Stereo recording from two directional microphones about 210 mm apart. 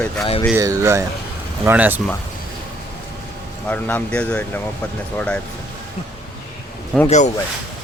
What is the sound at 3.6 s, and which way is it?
Speech, 5° left (ahead or behind).